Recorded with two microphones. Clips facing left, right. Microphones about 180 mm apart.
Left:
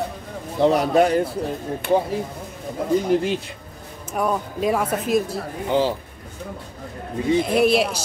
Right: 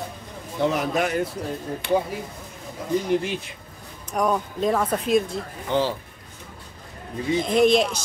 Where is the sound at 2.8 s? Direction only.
55° left (ahead or behind).